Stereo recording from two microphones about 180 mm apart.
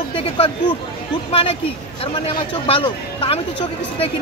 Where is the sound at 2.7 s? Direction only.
30° left (ahead or behind).